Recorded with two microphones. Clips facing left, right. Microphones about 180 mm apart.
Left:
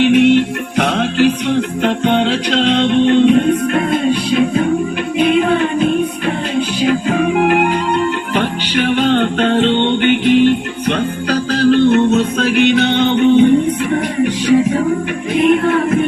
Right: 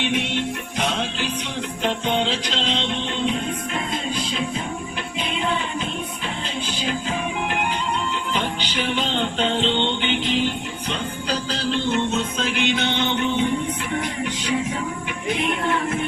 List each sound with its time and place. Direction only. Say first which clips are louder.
0.0 s music: left 14 dB; 65° left (ahead or behind)